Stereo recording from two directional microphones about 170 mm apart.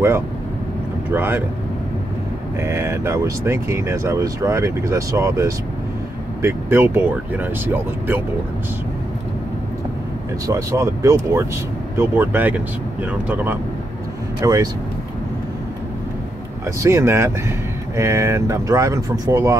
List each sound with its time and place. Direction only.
1.1 s speech: 10° right (ahead or behind)
2.6 s speech: 15° right (ahead or behind)
10.4 s speech: 20° right (ahead or behind)
14.4 s speech: 20° right (ahead or behind)
16.8 s speech: 15° right (ahead or behind)